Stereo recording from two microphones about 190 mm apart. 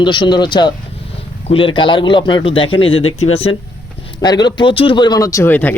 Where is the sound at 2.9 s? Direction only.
90° left.